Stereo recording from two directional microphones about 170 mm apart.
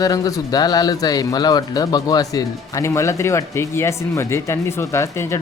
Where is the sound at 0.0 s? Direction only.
20° left (ahead or behind).